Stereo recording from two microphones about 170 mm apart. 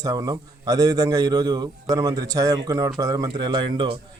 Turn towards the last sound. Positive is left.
turn(degrees=-30)  # may be behind; listen again after turning